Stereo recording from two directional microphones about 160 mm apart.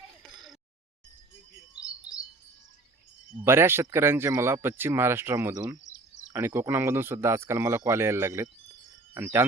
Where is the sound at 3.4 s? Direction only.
15° right (ahead or behind).